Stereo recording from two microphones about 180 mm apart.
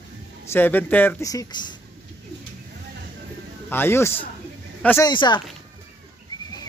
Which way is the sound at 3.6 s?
10° left (ahead or behind).